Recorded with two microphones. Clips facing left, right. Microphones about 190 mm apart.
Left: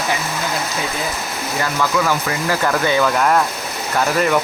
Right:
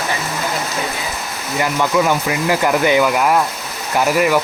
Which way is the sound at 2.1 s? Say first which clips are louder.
Right 3 dB; 15° right (ahead or behind).